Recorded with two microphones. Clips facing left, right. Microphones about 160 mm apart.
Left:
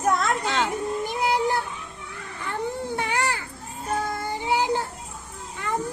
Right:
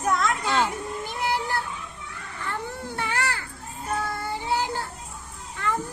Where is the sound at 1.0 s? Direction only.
20° left (ahead or behind).